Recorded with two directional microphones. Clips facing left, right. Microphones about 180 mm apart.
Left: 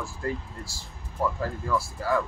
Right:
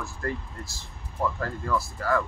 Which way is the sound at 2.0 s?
Centre (ahead or behind).